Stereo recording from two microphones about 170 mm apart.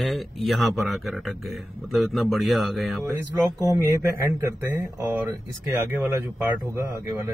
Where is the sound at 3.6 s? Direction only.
20° right (ahead or behind).